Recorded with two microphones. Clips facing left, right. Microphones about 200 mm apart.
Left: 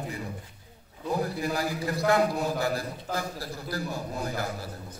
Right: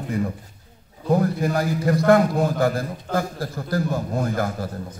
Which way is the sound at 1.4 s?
50° right (ahead or behind).